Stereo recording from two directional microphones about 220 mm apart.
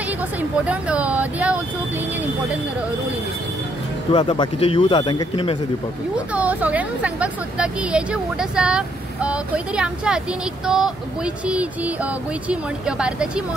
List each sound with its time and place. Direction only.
0.4 s speech: 5° right (ahead or behind)
4.1 s a man's voice: 20° left (ahead or behind)
6.1 s speech: 5° right (ahead or behind)